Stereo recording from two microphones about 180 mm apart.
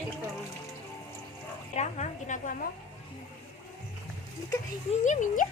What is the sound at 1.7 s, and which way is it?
Speech, 40° left (ahead or behind).